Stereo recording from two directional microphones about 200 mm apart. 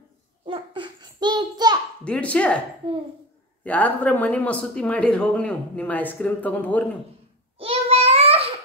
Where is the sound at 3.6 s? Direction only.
10° left (ahead or behind).